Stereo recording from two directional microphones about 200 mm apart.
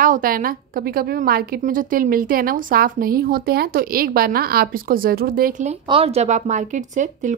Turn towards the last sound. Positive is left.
turn(degrees=-40)  # may be behind; listen again after turning